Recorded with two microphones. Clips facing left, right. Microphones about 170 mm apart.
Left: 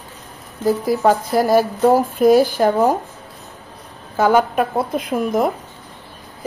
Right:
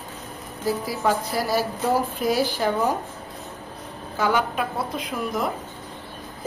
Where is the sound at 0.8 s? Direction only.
50° left (ahead or behind).